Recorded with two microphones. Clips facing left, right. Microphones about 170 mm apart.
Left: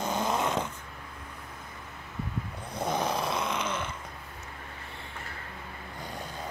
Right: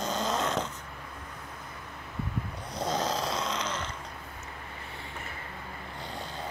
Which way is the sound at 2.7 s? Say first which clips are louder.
Left 1 dB; 55° left (ahead or behind).